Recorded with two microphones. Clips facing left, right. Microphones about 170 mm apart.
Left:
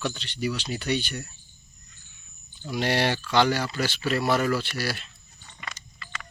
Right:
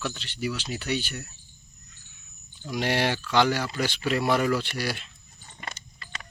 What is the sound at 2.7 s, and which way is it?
Speech, 15° right (ahead or behind).